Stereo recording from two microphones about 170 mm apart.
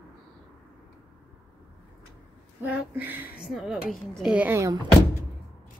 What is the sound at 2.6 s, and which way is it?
A woman's voice, 10° right (ahead or behind).